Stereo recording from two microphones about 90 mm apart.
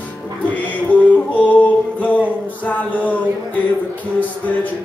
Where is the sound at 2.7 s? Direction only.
15° left (ahead or behind).